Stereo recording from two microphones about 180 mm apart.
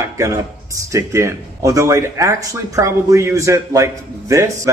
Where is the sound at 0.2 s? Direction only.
15° right (ahead or behind).